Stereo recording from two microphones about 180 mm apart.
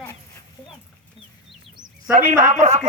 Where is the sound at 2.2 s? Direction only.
45° right (ahead or behind).